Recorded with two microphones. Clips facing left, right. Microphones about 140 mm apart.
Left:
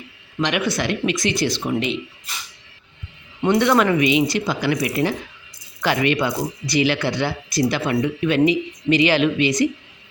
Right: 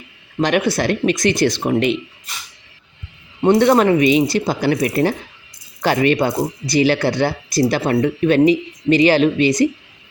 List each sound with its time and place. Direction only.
0.3 s speech: 40° right (ahead or behind)
3.4 s speech: 35° right (ahead or behind)